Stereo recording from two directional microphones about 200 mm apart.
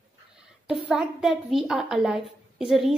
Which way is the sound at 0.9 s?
Centre (ahead or behind).